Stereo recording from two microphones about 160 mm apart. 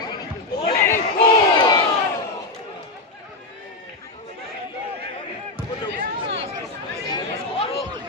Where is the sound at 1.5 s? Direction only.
25° left (ahead or behind).